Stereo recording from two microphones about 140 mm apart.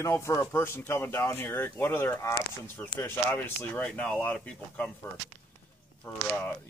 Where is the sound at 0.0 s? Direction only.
20° left (ahead or behind).